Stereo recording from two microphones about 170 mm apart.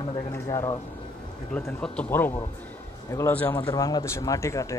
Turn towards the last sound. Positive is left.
turn(degrees=20)  # may be behind; listen again after turning